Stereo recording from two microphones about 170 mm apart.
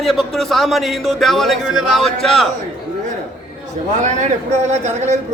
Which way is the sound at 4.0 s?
45° right (ahead or behind).